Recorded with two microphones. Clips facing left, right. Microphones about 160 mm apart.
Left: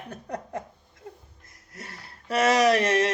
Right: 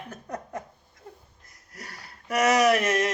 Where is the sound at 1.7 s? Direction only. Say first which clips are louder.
Left 1 dB; 25° left (ahead or behind).